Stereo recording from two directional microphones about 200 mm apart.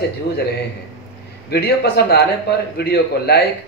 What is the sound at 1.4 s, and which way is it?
A man's voice, 55° left (ahead or behind).